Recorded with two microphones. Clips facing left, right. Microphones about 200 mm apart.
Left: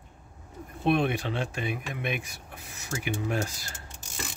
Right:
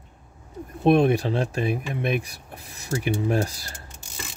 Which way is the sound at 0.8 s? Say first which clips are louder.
Right 7 dB; 40° right (ahead or behind).